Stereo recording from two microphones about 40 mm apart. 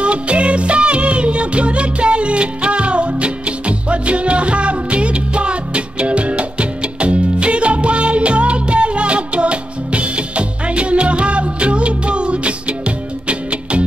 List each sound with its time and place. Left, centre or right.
0.0 s music: right